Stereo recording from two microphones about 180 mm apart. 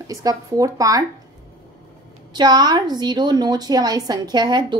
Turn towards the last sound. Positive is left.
turn(degrees=-25)  # may be behind; listen again after turning